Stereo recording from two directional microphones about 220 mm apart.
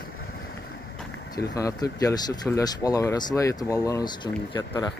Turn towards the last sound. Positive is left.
turn(degrees=20)  # may be behind; listen again after turning